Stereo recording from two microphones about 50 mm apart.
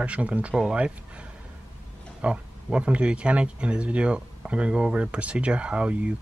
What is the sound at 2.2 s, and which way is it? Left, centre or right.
Speech, right.